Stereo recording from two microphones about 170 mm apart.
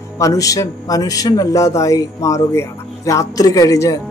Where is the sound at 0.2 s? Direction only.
20° left (ahead or behind).